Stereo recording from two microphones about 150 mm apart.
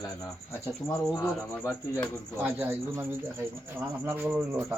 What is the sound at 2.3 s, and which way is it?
Speech, 10° right (ahead or behind).